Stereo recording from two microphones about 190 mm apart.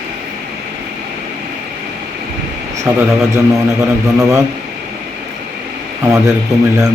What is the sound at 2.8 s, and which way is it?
Speech, 15° right (ahead or behind).